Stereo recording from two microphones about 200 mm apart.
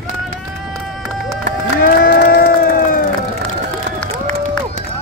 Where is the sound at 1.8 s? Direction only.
50° left (ahead or behind).